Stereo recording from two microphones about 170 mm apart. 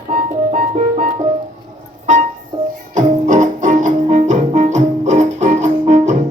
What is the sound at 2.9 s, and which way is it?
Music, 45° right (ahead or behind).